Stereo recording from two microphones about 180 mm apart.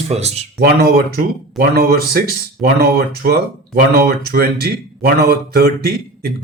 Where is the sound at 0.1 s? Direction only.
35° right (ahead or behind).